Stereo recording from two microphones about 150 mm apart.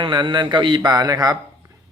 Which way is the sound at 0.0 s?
30° right (ahead or behind).